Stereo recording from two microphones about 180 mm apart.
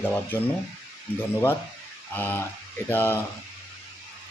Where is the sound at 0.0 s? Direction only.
10° left (ahead or behind).